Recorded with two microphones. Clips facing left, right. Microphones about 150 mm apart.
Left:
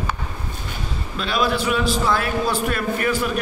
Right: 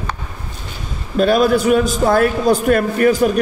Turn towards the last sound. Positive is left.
turn(degrees=-40)  # may be behind; listen again after turning